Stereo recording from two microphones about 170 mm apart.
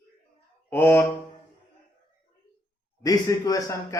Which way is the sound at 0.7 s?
15° left (ahead or behind).